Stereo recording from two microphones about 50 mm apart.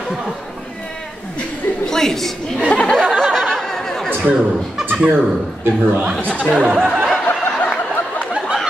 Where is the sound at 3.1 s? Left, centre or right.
Centre.